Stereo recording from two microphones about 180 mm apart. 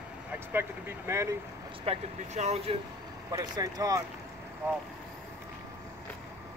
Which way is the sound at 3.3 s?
20° right (ahead or behind).